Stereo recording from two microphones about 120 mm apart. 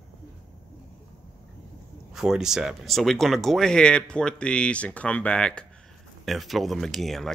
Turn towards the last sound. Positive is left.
turn(degrees=0)  # may be behind; listen again after turning